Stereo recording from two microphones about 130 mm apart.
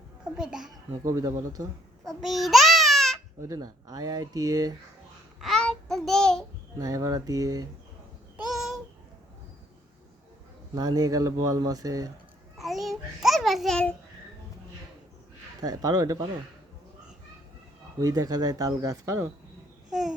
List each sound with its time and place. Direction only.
0.3 s a child's voice: 5° right (ahead or behind)
1.0 s speech: 25° right (ahead or behind)
2.0 s babbling: centre (ahead or behind)
3.4 s speech: 25° right (ahead or behind)
5.4 s child singing: 5° left (ahead or behind)
6.7 s speech: 25° right (ahead or behind)
8.4 s a sound: centre (ahead or behind)
10.8 s speech: 30° right (ahead or behind)
12.5 s babbling: centre (ahead or behind)
15.6 s speech: 30° right (ahead or behind)
18.0 s speech: 25° right (ahead or behind)
19.9 s babbling: 5° right (ahead or behind)